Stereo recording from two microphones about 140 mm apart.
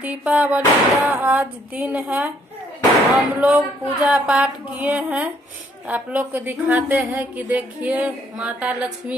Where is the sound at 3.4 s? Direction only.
10° right (ahead or behind).